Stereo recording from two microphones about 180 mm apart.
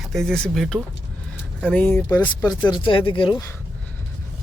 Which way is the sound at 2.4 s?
25° left (ahead or behind).